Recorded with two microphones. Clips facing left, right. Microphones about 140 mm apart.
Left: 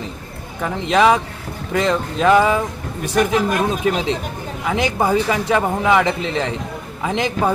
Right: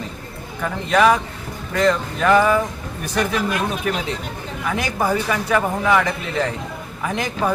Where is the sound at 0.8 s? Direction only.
20° left (ahead or behind).